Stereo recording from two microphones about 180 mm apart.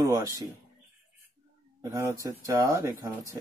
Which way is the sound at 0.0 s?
20° right (ahead or behind).